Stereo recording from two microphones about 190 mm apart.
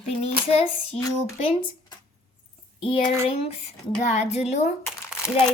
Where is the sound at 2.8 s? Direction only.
30° left (ahead or behind).